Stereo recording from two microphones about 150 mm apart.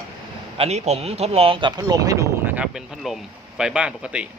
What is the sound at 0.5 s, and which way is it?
Speech, 45° right (ahead or behind).